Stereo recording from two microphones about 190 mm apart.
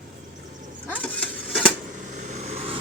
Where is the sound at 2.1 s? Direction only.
40° right (ahead or behind).